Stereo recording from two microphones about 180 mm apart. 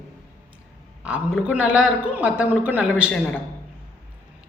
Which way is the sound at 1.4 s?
5° right (ahead or behind).